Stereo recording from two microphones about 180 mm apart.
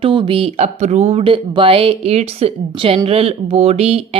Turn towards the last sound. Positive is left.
turn(degrees=-35)  # may be behind; listen again after turning